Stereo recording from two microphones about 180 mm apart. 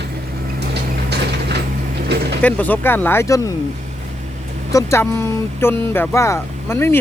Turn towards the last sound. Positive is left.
turn(degrees=15)  # may be behind; listen again after turning